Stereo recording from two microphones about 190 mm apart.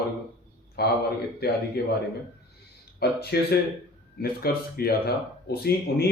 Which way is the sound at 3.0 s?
55° left (ahead or behind).